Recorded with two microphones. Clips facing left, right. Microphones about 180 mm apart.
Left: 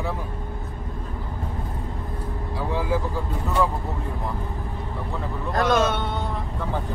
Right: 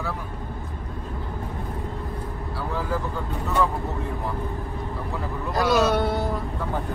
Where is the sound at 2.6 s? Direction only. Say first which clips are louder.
Left 3 dB; 10° left (ahead or behind).